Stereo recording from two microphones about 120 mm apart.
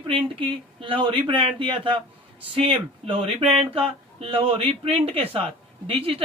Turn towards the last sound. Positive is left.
turn(degrees=-50)  # may be behind; listen again after turning